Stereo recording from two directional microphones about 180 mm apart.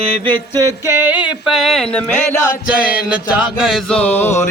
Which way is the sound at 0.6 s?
15° right (ahead or behind).